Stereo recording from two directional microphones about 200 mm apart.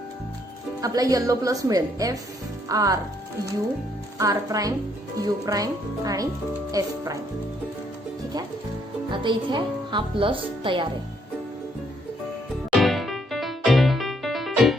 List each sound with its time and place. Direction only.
0.8 s a woman's voice: 20° right (ahead or behind)
4.2 s a woman's voice: 15° right (ahead or behind)
9.0 s a woman's voice: 25° right (ahead or behind)
12.8 s music: centre (ahead or behind)